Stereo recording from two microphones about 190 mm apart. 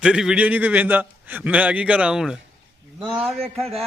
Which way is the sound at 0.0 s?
5° right (ahead or behind).